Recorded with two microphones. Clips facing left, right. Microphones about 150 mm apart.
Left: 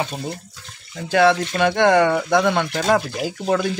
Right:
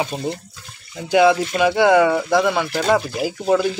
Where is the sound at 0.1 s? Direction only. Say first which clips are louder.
Right 4 dB; 10° right (ahead or behind).